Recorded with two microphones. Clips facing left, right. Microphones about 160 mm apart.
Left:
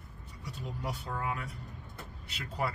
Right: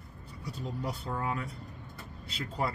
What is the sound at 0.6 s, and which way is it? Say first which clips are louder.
Speech: right 2 dB; 30° right (ahead or behind).